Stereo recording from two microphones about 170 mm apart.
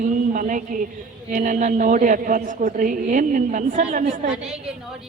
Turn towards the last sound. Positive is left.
turn(degrees=-5)  # may be behind; listen again after turning